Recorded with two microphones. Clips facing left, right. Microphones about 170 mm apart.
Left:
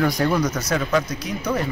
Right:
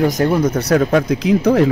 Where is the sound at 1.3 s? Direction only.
75° right (ahead or behind).